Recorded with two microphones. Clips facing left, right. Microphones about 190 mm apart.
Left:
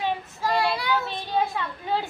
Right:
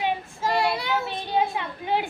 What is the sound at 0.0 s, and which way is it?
A child's voice, 20° right (ahead or behind).